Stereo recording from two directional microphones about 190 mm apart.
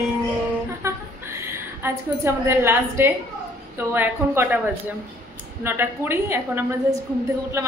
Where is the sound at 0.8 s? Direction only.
15° right (ahead or behind).